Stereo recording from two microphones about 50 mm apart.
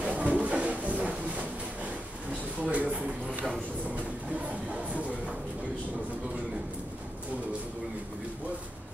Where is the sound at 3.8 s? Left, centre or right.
Right.